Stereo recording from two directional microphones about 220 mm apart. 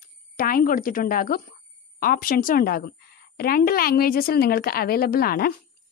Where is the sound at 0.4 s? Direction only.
40° left (ahead or behind).